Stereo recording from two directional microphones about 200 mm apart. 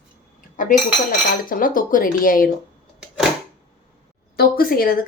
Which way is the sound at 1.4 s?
45° left (ahead or behind).